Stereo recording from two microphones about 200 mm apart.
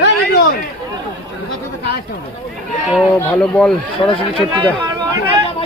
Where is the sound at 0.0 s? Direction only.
55° left (ahead or behind).